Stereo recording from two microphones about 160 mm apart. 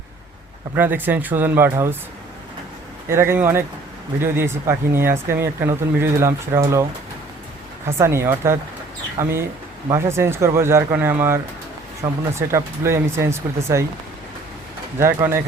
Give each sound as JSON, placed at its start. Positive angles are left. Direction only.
{"t": 0.8, "sound": "speech", "side_deg": -10}
{"t": 3.1, "sound": "speech", "side_deg": -15}
{"t": 7.9, "sound": "speech", "side_deg": -15}
{"t": 14.9, "sound": "speech", "side_deg": -15}